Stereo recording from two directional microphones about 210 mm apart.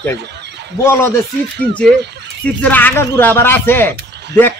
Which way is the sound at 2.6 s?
10° left (ahead or behind).